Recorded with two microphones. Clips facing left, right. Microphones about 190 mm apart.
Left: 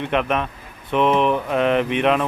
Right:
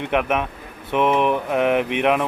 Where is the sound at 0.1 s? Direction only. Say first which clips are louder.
Right 1 dB; 10° right (ahead or behind).